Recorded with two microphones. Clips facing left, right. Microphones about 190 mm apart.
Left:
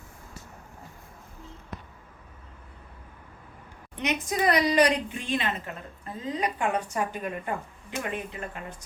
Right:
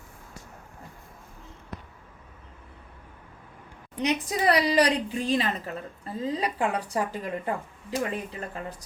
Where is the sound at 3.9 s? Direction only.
35° right (ahead or behind).